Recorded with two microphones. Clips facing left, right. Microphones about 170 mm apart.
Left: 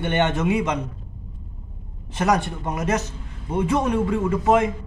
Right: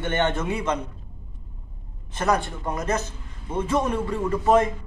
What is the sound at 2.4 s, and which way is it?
Speech, 20° left (ahead or behind).